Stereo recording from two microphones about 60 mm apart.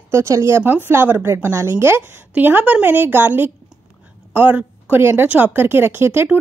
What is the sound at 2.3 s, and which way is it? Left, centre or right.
Speech, right.